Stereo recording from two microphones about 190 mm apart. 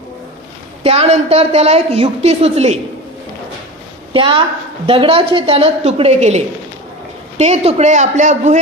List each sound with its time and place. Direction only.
0.8 s a woman's voice: 30° right (ahead or behind)
4.1 s a woman's voice: 25° right (ahead or behind)